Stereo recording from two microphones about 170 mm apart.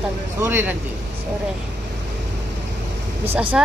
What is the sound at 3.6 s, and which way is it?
Speech, 5° right (ahead or behind).